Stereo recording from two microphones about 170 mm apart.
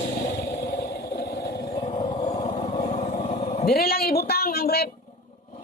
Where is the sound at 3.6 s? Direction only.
65° left (ahead or behind).